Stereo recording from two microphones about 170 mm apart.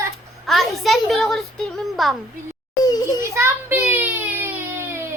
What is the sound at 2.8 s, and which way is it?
Children playing, 20° left (ahead or behind).